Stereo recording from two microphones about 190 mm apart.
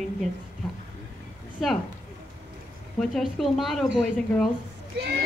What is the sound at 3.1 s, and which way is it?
Speech, centre (ahead or behind).